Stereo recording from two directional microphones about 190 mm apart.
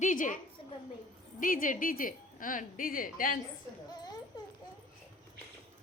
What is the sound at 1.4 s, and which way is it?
A woman's voice, 45° left (ahead or behind).